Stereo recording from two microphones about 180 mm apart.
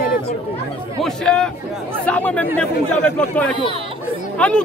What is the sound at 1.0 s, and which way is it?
A man's voice, 5° left (ahead or behind).